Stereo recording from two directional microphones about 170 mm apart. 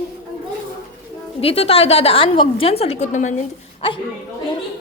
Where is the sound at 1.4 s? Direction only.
35° left (ahead or behind).